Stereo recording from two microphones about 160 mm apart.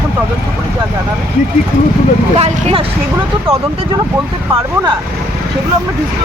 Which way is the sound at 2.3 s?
35° right (ahead or behind).